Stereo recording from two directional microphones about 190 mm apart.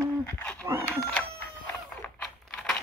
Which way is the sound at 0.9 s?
5° left (ahead or behind).